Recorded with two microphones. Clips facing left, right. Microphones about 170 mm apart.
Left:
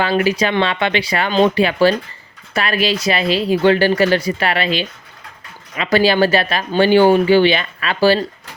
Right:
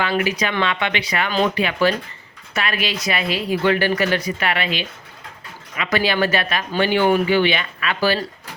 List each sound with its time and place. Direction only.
0.0 s speech: 30° left (ahead or behind)